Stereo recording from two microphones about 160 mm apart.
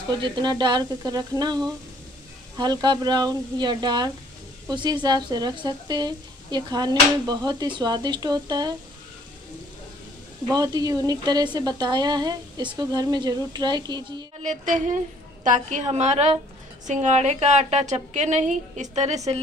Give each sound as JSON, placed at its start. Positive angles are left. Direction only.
{"t": 0.2, "sound": "speech", "side_deg": -25}
{"t": 10.5, "sound": "speech", "side_deg": -25}
{"t": 14.4, "sound": "a woman's voice", "side_deg": -50}